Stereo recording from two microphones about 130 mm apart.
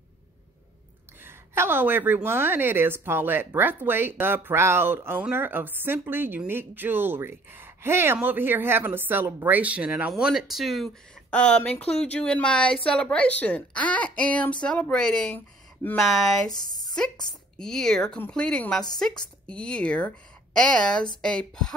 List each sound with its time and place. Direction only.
1.2 s a woman's voice: 20° right (ahead or behind); by 15.3 s 5° left (ahead or behind)
15.3 s speech: 15° left (ahead or behind)
16.0 s speech: centre (ahead or behind)
16.4 s speech: 30° left (ahead or behind)
16.9 s a woman's voice: 5° left (ahead or behind)